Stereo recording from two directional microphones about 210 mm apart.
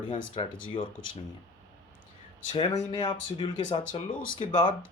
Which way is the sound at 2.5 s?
25° left (ahead or behind).